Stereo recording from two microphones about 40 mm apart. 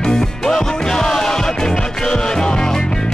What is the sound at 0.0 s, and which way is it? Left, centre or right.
Music, centre.